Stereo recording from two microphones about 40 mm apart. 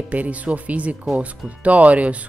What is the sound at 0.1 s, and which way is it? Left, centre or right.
Speech, right.